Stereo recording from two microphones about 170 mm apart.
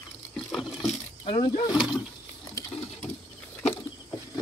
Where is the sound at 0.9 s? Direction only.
35° left (ahead or behind).